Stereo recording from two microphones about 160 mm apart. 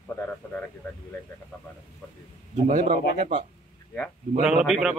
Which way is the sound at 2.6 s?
55° right (ahead or behind).